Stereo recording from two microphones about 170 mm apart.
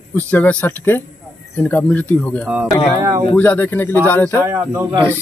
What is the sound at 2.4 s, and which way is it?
Speech, 10° right (ahead or behind).